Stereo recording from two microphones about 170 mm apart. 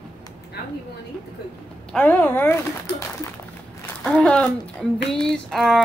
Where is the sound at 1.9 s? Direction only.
10° left (ahead or behind).